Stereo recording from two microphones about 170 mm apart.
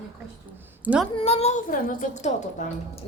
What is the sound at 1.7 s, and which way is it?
A woman's voice, 55° left (ahead or behind).